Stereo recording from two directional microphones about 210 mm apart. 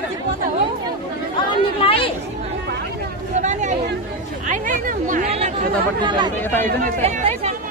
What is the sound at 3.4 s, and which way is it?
Chatter, 35° right (ahead or behind).